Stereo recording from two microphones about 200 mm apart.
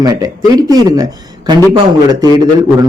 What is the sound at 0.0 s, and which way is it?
A man's voice, 20° right (ahead or behind).